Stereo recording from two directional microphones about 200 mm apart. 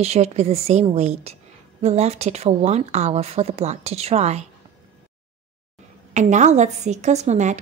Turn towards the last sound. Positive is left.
turn(degrees=-35)  # may be behind; listen again after turning